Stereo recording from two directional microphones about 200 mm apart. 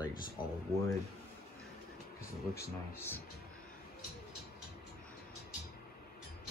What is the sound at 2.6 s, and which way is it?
Speech, 10° left (ahead or behind).